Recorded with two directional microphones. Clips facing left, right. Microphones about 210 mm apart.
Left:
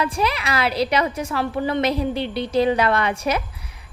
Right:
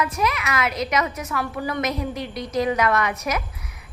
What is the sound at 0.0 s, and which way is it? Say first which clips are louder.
A woman's voice: left 1 dB; 30° left (ahead or behind).